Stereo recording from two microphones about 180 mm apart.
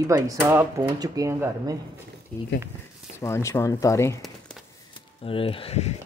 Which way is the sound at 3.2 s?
15° left (ahead or behind).